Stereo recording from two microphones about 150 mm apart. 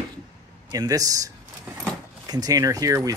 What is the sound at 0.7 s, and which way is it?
Speech, 25° right (ahead or behind).